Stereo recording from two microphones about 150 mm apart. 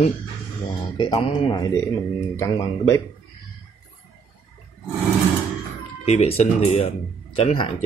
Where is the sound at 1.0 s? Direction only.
35° left (ahead or behind).